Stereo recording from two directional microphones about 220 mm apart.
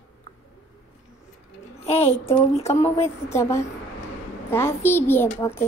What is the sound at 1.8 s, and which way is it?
Speech, 30° left (ahead or behind).